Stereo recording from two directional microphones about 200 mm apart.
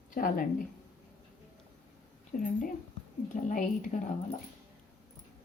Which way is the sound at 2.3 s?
45° left (ahead or behind).